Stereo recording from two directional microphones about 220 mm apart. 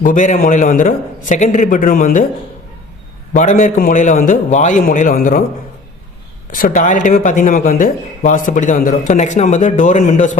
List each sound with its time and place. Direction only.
0.0 s speech: 35° left (ahead or behind)
3.3 s speech: 35° left (ahead or behind)
6.6 s speech: 35° left (ahead or behind)